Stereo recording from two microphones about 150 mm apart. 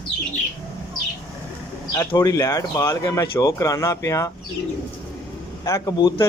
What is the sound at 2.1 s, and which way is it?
A man's voice, 20° left (ahead or behind).